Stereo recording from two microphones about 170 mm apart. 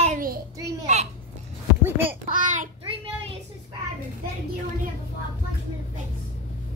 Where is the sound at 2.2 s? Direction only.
50° right (ahead or behind).